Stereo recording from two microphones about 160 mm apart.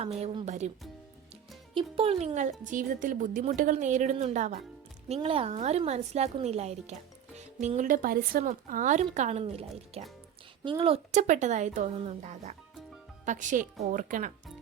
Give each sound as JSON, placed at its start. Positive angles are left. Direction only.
{"t": 0.0, "sound": "speech", "side_deg": -40}
{"t": 1.7, "sound": "speech", "side_deg": -35}
{"t": 5.0, "sound": "speech", "side_deg": -40}